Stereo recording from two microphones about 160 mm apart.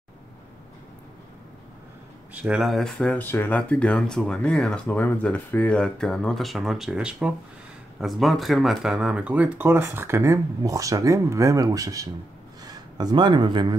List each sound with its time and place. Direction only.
2.3 s speech: 5° right (ahead or behind); by 13.7 s 25° right (ahead or behind)